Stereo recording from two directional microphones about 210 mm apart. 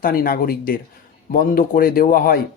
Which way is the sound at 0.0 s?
45° left (ahead or behind).